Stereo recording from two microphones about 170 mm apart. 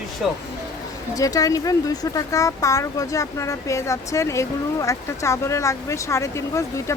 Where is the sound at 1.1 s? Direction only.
20° left (ahead or behind).